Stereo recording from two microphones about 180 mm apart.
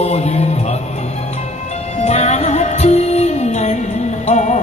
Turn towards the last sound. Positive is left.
turn(degrees=40)  # may be behind; listen again after turning